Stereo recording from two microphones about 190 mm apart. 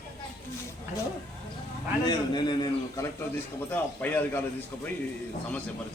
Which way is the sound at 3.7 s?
10° left (ahead or behind).